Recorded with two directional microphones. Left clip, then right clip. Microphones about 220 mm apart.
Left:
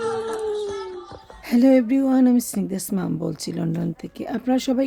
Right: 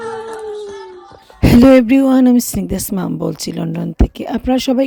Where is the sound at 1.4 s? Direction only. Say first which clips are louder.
Right 9 dB; 40° right (ahead or behind).